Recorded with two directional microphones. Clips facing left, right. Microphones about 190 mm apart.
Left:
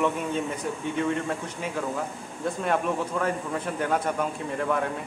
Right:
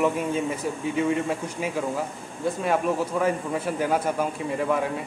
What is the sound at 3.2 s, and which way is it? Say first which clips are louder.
Speech: right 3 dB; 10° right (ahead or behind).